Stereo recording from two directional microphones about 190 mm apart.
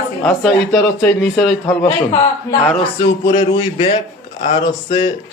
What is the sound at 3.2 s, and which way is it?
A man's voice, 20° left (ahead or behind).